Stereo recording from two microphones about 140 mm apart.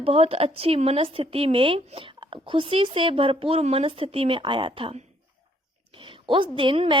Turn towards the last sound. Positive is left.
turn(degrees=-40)  # may be behind; listen again after turning